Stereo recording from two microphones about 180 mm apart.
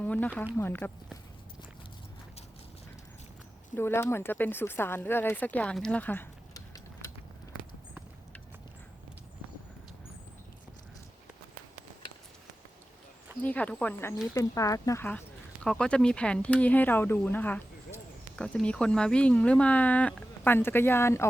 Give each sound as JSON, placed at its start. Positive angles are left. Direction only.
{"t": 0.0, "sound": "speech", "side_deg": 10}
{"t": 3.8, "sound": "speech", "side_deg": 15}
{"t": 13.4, "sound": "speech", "side_deg": 10}